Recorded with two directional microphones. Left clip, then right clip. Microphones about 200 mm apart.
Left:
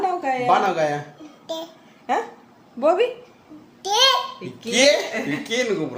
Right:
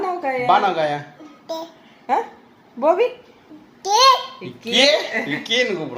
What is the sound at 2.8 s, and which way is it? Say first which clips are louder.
Speech: right 2 dB; 15° left (ahead or behind).